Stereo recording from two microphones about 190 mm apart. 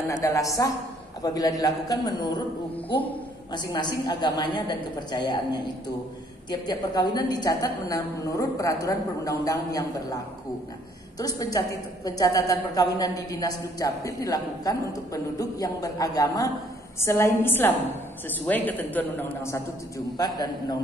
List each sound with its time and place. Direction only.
0.1 s a woman's voice: 15° left (ahead or behind)